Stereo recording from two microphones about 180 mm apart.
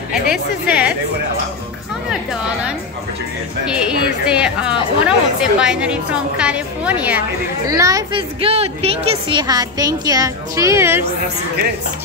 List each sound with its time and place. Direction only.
0.3 s a woman's voice: 5° right (ahead or behind)
4.3 s a woman's voice: 5° right (ahead or behind)
7.6 s a woman's voice: 20° right (ahead or behind)